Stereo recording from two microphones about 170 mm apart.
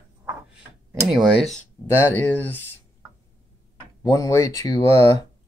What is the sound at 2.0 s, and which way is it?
Speech, 10° left (ahead or behind).